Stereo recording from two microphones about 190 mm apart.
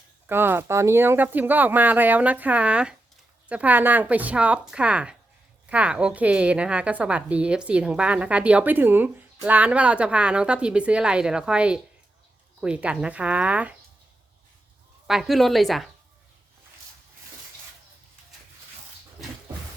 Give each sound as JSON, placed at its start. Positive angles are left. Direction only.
{"t": 0.3, "sound": "a woman's voice", "side_deg": -10}
{"t": 15.0, "sound": "a woman's voice", "side_deg": 0}